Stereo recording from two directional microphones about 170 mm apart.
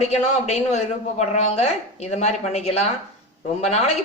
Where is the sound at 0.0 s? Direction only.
40° left (ahead or behind).